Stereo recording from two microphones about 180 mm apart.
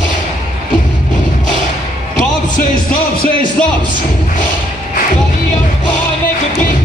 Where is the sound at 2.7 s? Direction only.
50° left (ahead or behind).